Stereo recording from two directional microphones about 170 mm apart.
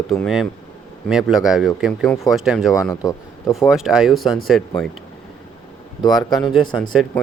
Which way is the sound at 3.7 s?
5° right (ahead or behind).